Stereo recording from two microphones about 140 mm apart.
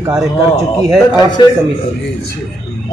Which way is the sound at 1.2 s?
30° left (ahead or behind).